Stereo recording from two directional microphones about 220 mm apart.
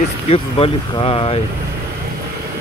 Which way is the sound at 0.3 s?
25° left (ahead or behind).